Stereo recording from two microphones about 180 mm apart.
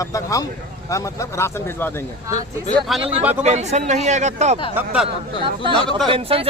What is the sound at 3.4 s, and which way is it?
A man's voice, 40° right (ahead or behind).